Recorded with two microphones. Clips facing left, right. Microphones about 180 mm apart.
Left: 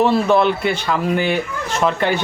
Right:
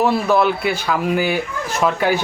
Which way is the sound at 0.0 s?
5° right (ahead or behind).